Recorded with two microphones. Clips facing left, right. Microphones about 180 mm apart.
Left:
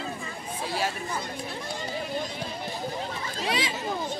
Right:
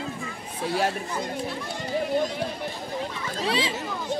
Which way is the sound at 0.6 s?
55° right (ahead or behind).